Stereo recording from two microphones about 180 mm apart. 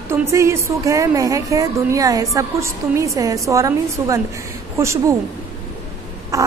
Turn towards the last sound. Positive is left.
turn(degrees=-20)  # may be behind; listen again after turning